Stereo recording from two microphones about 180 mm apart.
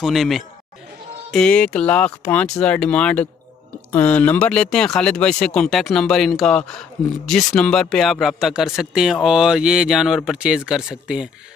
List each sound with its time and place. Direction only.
0.0 s speech: centre (ahead or behind)